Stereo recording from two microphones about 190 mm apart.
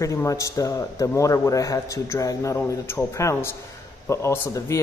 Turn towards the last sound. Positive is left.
turn(degrees=15)  # may be behind; listen again after turning